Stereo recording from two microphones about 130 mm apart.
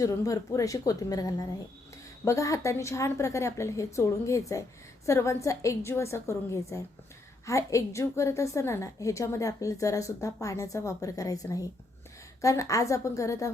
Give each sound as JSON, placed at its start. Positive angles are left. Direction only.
{"t": 0.0, "sound": "a woman's voice", "side_deg": 25}